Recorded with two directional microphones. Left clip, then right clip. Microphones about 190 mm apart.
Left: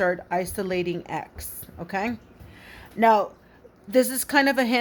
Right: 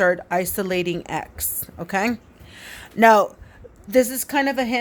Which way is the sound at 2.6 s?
30° right (ahead or behind).